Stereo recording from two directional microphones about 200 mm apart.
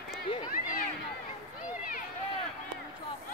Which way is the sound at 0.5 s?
45° left (ahead or behind).